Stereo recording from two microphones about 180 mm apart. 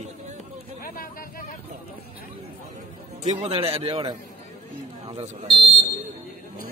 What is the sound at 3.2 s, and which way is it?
A man's voice, 40° right (ahead or behind).